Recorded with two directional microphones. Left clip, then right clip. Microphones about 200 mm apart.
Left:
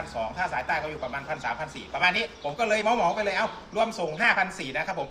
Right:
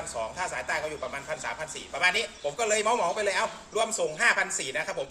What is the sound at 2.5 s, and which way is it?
A man's voice, 15° right (ahead or behind).